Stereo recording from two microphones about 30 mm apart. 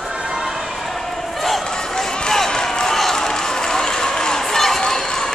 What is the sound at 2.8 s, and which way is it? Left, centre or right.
Crowd, centre.